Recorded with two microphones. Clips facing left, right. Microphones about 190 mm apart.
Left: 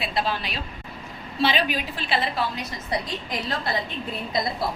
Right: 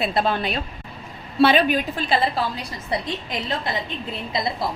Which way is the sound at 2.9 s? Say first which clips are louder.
Right 2 dB; 25° right (ahead or behind).